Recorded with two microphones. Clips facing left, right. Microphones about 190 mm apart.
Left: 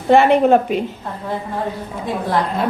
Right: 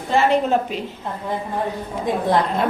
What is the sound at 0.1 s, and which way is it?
Speech, 60° left (ahead or behind).